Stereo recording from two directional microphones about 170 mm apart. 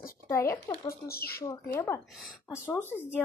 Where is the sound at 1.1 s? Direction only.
65° left (ahead or behind).